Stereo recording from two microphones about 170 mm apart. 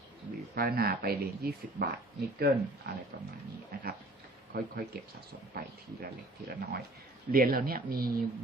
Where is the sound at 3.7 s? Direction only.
65° right (ahead or behind).